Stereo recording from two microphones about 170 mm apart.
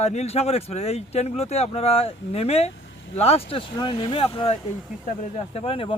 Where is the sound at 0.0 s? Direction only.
40° left (ahead or behind).